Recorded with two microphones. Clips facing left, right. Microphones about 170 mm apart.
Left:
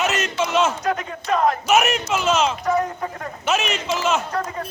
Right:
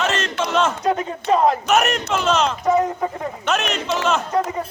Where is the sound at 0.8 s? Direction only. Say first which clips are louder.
Right 3 dB; 25° right (ahead or behind).